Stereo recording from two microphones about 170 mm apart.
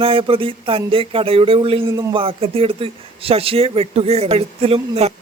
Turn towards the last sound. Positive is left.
turn(degrees=-35)  # may be behind; listen again after turning